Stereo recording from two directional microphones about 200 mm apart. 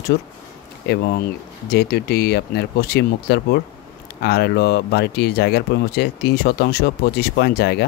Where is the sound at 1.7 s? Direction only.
50° left (ahead or behind).